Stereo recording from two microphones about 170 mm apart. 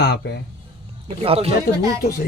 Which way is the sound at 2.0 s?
65° left (ahead or behind).